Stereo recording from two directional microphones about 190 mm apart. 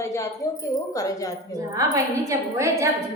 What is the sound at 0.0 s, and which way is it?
Wind chime, 15° left (ahead or behind).